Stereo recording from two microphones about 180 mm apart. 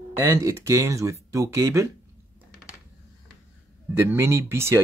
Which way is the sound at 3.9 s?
10° right (ahead or behind).